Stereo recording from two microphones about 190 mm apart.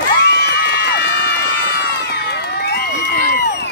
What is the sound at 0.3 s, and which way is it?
Run, 60° left (ahead or behind).